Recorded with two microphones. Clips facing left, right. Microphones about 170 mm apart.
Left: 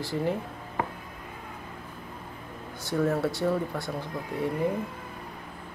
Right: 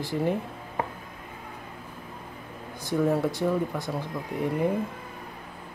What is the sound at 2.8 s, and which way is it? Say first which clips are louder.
Speech: right 2 dB; 15° right (ahead or behind).